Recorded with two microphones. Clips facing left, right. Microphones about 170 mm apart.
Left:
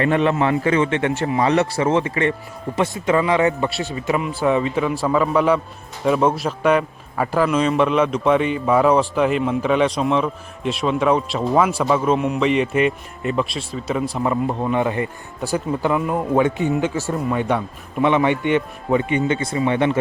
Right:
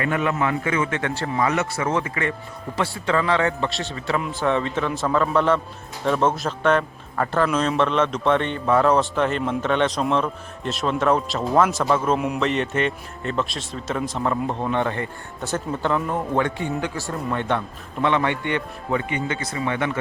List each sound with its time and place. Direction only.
0.0 s a man's voice: 30° left (ahead or behind); by 16.2 s 5° left (ahead or behind)
16.3 s a man's voice: 15° left (ahead or behind)
17.1 s a man's voice: 5° left (ahead or behind); by 20.0 s 20° left (ahead or behind)